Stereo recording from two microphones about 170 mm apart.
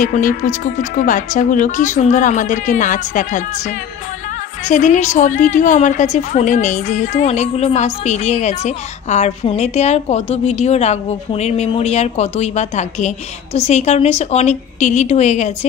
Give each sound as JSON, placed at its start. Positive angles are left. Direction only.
{"t": 0.0, "sound": "a woman's voice", "side_deg": 50}